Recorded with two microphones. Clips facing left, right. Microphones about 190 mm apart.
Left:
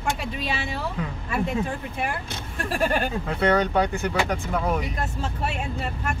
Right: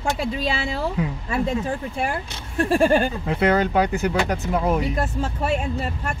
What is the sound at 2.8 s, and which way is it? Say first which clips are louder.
Speech: right 2 dB; 25° right (ahead or behind).